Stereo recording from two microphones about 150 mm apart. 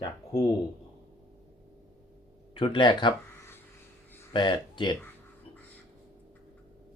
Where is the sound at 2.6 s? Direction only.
35° left (ahead or behind).